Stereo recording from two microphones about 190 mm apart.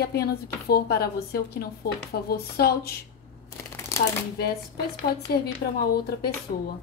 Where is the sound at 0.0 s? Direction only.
55° left (ahead or behind).